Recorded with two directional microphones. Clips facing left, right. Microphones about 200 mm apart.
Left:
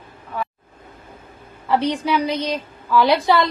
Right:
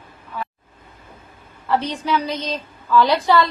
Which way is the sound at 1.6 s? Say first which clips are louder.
Left 2 dB; 15° left (ahead or behind).